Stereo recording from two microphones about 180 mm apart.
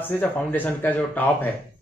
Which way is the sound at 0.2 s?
10° left (ahead or behind).